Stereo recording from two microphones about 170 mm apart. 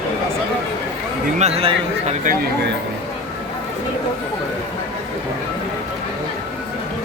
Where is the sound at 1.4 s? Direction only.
40° right (ahead or behind).